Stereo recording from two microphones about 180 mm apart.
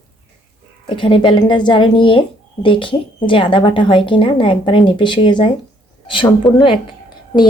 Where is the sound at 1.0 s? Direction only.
30° left (ahead or behind).